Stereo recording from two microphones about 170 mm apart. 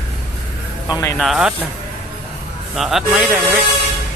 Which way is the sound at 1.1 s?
Centre (ahead or behind).